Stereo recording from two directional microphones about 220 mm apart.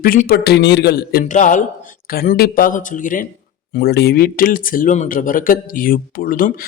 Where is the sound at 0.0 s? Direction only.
40° left (ahead or behind).